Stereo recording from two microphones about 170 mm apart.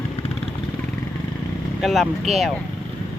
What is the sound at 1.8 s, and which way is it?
Speech, centre (ahead or behind).